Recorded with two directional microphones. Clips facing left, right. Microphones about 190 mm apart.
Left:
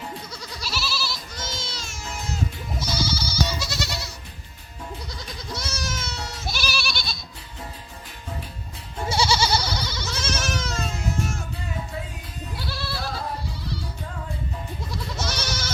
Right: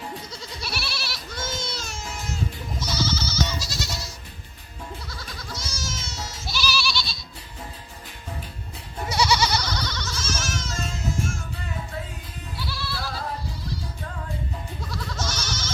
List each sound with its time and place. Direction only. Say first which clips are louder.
0.6 s goat: left 4 dB; 60° right (ahead or behind)
2.7 s goat: right 1 dB; 10° left (ahead or behind)
3.6 s goat: left 2 dB; 60° left (ahead or behind)
5.0 s goat: left 2 dB; 20° left (ahead or behind)
5.5 s goat: left 4 dB; 60° left (ahead or behind)
9.0 s goat: even; 30° left (ahead or behind)
9.6 s goat: left 1 dB; 10° left (ahead or behind)
10.1 s goat: left 2 dB; 60° left (ahead or behind)
12.6 s goat: even; 55° left (ahead or behind)
14.8 s goat: even; 15° left (ahead or behind)